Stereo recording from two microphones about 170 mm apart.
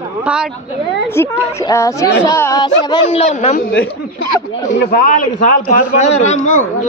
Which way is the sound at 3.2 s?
40° left (ahead or behind).